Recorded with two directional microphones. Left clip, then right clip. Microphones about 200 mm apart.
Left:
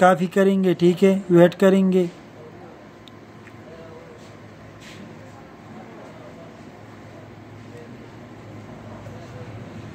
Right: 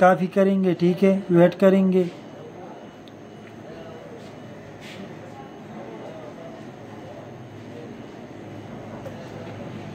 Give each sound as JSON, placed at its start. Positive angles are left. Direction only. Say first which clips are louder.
{"t": 0.0, "sound": "speech", "louder": "left 1 dB", "side_deg": 40}